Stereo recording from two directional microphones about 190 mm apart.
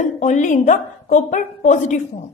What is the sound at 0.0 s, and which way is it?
A woman's voice, 40° left (ahead or behind).